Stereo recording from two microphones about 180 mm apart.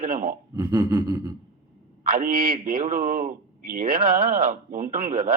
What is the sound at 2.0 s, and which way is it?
A man's voice, 50° right (ahead or behind).